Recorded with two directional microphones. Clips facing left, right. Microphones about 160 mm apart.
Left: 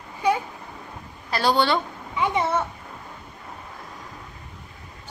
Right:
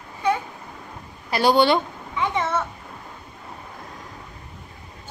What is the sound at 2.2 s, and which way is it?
Speech, 15° left (ahead or behind).